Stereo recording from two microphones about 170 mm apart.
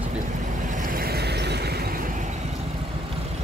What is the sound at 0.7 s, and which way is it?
Vehicle, 60° right (ahead or behind).